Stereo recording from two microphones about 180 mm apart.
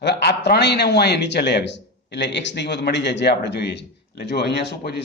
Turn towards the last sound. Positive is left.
turn(degrees=70)  # may be behind; listen again after turning